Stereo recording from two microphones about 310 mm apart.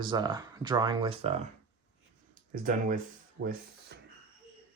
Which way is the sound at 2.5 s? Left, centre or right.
Right.